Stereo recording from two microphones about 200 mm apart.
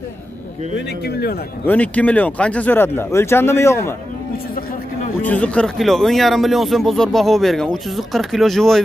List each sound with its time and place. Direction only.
1.7 s speech: 5° left (ahead or behind)
5.2 s speech: 5° left (ahead or behind)